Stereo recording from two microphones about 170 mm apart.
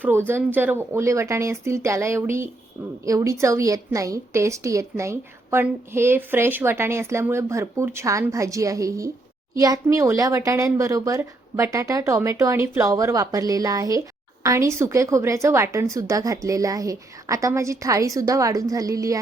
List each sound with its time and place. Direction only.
0.0 s a woman's voice: 10° right (ahead or behind)